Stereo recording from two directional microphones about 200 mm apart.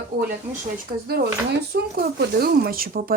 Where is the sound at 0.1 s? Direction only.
50° right (ahead or behind).